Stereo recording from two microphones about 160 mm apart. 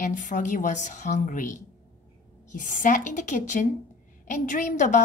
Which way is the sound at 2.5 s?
55° left (ahead or behind).